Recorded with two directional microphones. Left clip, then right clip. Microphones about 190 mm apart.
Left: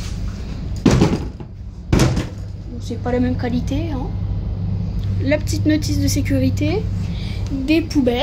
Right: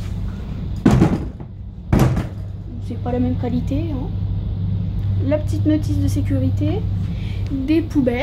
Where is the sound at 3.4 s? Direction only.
15° right (ahead or behind).